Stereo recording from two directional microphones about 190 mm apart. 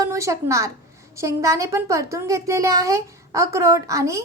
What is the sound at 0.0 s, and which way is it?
A woman's voice, 15° right (ahead or behind).